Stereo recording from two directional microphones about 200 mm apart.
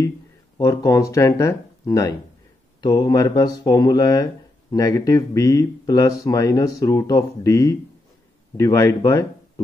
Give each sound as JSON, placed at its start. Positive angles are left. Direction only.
{"t": 0.6, "sound": "speech", "side_deg": 15}